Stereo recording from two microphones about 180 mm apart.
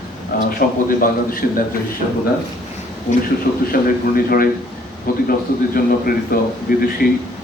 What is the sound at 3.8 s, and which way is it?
A man's voice, 55° left (ahead or behind).